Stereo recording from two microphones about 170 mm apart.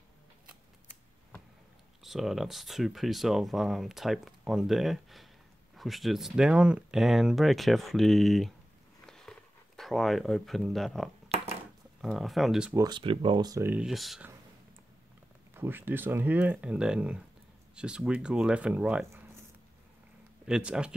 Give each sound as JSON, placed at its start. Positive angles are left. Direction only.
{"t": 2.0, "sound": "speech", "side_deg": 0}
{"t": 9.0, "sound": "a sound", "side_deg": 5}
{"t": 9.8, "sound": "speech", "side_deg": 0}
{"t": 12.7, "sound": "speech", "side_deg": -25}
{"t": 15.5, "sound": "speech", "side_deg": -10}
{"t": 20.4, "sound": "speech", "side_deg": -5}